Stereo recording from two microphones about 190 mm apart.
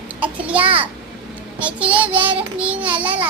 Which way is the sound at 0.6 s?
30° right (ahead or behind).